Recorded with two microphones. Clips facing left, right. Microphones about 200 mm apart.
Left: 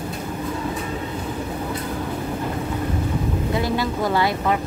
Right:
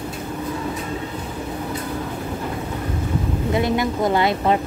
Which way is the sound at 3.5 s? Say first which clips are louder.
Right 4 dB; 20° right (ahead or behind).